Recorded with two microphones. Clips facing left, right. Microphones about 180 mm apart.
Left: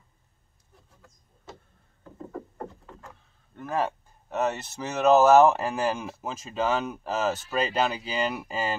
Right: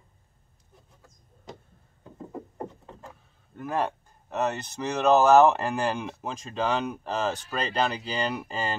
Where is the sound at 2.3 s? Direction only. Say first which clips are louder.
Right 1 dB; 20° right (ahead or behind).